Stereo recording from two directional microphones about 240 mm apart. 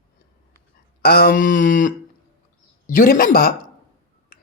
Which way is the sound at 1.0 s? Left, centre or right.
Left.